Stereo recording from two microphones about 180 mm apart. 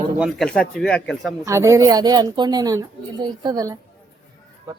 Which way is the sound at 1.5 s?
15° right (ahead or behind).